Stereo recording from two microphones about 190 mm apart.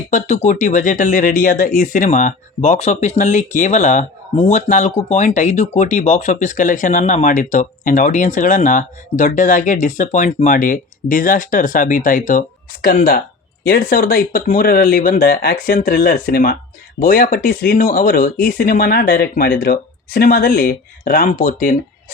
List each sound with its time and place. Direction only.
0.1 s speech: 40° left (ahead or behind)